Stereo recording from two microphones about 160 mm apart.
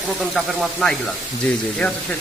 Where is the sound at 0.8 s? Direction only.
5° left (ahead or behind).